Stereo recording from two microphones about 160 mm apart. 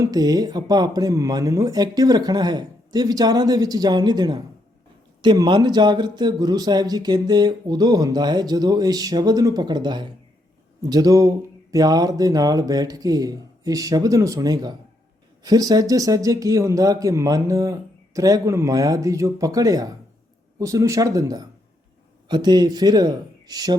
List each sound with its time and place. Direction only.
0.0 s a man's voice: 25° right (ahead or behind)